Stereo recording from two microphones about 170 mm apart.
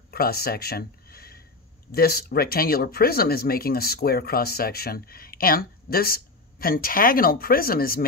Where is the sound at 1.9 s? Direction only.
65° left (ahead or behind).